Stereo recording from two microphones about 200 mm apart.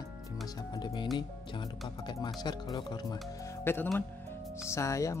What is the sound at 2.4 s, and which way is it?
Speech, 20° left (ahead or behind).